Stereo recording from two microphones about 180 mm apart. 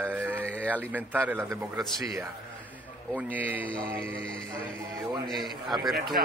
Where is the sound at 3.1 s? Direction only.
10° right (ahead or behind).